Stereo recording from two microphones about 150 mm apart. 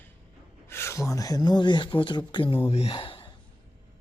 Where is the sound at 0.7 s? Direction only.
15° left (ahead or behind); by 3.3 s 35° left (ahead or behind).